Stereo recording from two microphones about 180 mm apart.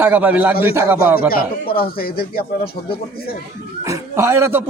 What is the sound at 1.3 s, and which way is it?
Speech, 55° left (ahead or behind).